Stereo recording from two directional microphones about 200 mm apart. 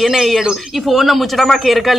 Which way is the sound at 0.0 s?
Centre (ahead or behind).